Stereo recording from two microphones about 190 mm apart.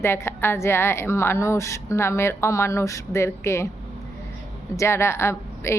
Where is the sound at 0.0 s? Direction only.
15° left (ahead or behind).